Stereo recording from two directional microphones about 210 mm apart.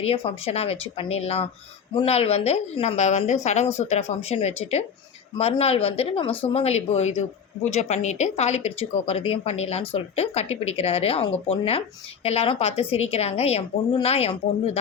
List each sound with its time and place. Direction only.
0.0 s speech: 30° left (ahead or behind)